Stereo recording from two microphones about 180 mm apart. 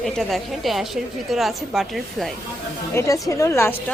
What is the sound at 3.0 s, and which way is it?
Speech, 20° left (ahead or behind).